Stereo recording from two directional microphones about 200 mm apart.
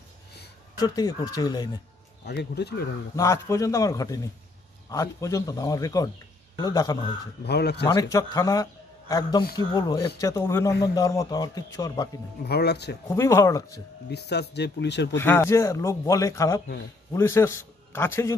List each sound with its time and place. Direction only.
0.7 s speech: 20° left (ahead or behind)
2.2 s speech: 55° left (ahead or behind)
3.2 s speech: 15° left (ahead or behind)
7.4 s speech: 55° left (ahead or behind)
7.8 s speech: 20° left (ahead or behind)
12.4 s speech: 55° left (ahead or behind)
13.1 s speech: 15° left (ahead or behind)
14.1 s speech: 55° left (ahead or behind)
15.1 s a man's voice: 10° left (ahead or behind)